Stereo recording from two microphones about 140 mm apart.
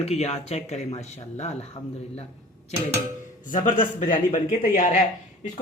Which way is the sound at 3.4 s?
65° left (ahead or behind).